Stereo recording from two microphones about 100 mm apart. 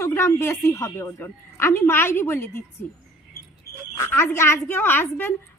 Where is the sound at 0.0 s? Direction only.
25° left (ahead or behind).